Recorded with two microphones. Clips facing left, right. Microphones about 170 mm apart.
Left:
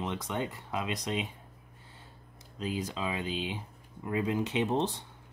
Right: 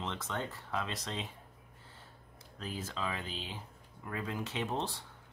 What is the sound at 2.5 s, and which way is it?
Speech, 15° left (ahead or behind).